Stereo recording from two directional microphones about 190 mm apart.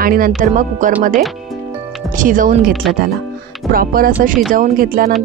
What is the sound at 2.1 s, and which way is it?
Speech, 45° right (ahead or behind).